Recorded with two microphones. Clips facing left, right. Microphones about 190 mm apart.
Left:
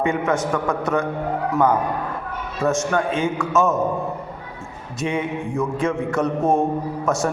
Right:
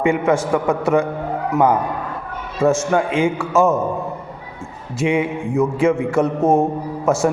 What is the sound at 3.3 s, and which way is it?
Speech, 30° right (ahead or behind).